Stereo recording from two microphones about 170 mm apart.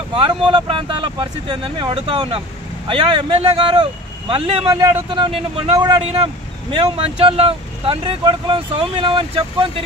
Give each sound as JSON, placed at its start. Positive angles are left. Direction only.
{"t": 0.1, "sound": "a man's voice", "side_deg": -30}